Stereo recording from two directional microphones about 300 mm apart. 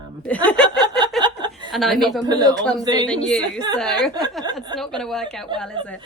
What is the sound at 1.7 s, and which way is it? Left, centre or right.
Speech, centre.